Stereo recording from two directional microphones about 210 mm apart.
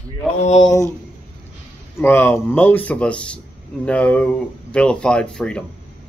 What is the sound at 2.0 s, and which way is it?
A man's voice, 10° left (ahead or behind).